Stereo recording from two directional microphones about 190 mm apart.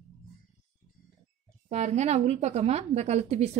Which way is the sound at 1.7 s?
35° right (ahead or behind).